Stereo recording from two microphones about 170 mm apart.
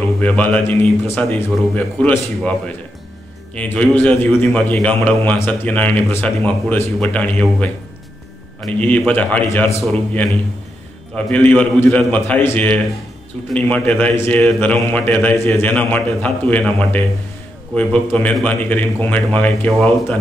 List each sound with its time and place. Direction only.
0.2 s a man's voice: 10° left (ahead or behind)
3.5 s a man's voice: 10° left (ahead or behind)
18.1 s a man's voice: 10° left (ahead or behind)